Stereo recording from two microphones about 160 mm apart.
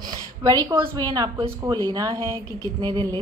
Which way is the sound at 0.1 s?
25° right (ahead or behind).